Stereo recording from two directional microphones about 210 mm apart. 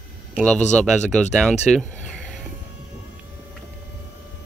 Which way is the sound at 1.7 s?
5° left (ahead or behind).